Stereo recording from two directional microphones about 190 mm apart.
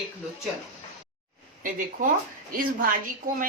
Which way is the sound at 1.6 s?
45° right (ahead or behind).